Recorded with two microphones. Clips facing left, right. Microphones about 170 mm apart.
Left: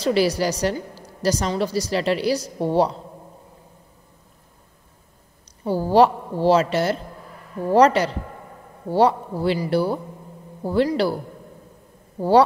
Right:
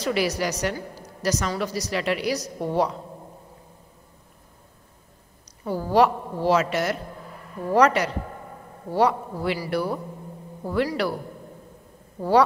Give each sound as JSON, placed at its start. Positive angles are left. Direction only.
{"t": 0.0, "sound": "a woman's voice", "side_deg": 30}
{"t": 5.6, "sound": "a woman's voice", "side_deg": 30}
{"t": 12.2, "sound": "a man's voice", "side_deg": 30}